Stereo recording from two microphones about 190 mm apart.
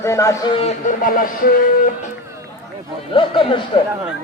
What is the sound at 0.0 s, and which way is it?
Speech, 15° left (ahead or behind).